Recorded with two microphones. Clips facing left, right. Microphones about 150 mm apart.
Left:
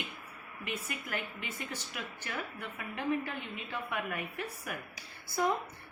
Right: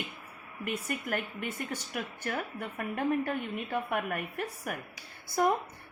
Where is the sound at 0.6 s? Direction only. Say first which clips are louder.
Right 5 dB; 50° right (ahead or behind).